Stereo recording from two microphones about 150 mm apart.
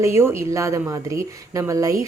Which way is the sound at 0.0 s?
15° right (ahead or behind).